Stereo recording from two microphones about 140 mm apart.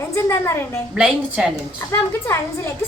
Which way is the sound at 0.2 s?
20° left (ahead or behind).